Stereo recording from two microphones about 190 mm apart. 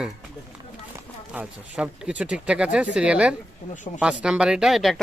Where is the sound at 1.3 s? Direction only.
5° right (ahead or behind).